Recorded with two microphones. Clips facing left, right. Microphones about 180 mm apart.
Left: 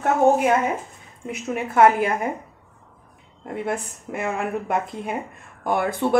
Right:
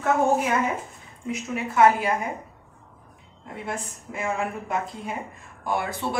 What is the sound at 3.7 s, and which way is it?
A woman's voice, 60° left (ahead or behind).